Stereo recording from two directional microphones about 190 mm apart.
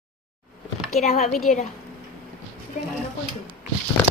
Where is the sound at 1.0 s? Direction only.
35° left (ahead or behind).